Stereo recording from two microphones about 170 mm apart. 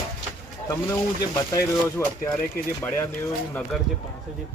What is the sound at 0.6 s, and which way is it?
Speech, 20° left (ahead or behind).